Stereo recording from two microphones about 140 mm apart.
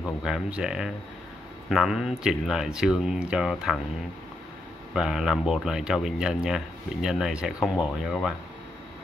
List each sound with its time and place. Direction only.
0.2 s speech: 5° right (ahead or behind)
4.9 s speech: 5° right (ahead or behind)